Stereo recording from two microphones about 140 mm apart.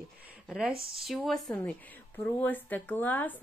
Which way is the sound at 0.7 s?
40° right (ahead or behind).